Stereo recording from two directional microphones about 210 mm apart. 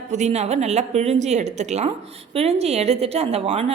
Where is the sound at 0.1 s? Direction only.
35° right (ahead or behind).